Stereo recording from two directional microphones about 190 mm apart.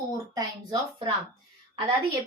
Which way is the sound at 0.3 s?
25° right (ahead or behind).